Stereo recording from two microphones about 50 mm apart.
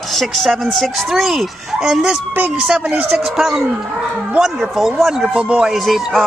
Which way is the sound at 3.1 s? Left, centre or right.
Centre.